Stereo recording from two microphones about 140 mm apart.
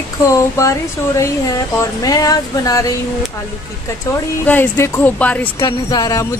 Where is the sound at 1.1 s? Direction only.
25° left (ahead or behind).